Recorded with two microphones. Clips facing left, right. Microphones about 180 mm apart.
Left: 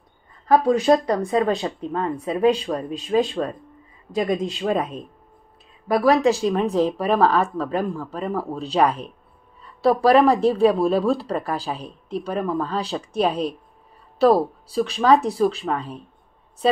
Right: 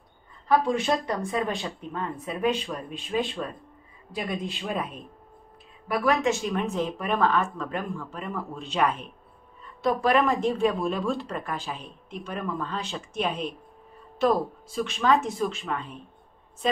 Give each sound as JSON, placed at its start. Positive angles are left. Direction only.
{"t": 0.5, "sound": "speech", "side_deg": 40}
{"t": 5.9, "sound": "a woman's voice", "side_deg": 35}